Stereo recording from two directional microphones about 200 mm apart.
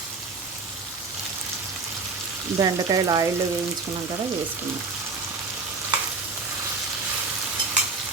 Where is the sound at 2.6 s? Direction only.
20° right (ahead or behind).